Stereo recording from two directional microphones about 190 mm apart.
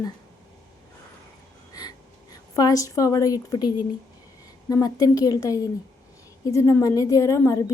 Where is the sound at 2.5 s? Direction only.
20° left (ahead or behind).